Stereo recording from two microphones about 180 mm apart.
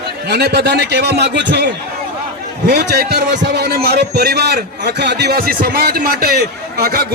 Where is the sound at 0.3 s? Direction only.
65° right (ahead or behind).